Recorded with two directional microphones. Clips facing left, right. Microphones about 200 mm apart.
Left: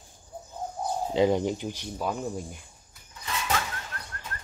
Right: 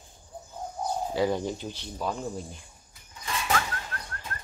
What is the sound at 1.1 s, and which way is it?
Speech, 20° left (ahead or behind).